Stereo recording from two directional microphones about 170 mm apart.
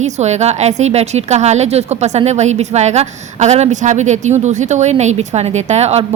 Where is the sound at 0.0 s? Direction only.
40° right (ahead or behind).